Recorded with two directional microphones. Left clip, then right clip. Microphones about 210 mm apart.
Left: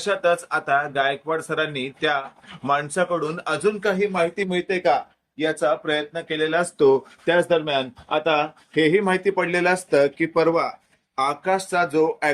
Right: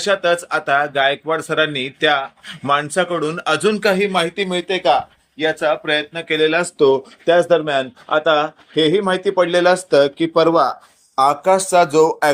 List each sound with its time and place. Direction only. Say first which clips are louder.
0.0 s a man's voice: right 4 dB; 20° right (ahead or behind)
6.7 s a man's voice: right 3 dB; centre (ahead or behind); by 12.3 s 20° right (ahead or behind)